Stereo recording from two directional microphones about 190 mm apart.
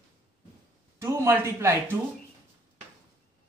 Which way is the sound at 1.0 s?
15° right (ahead or behind).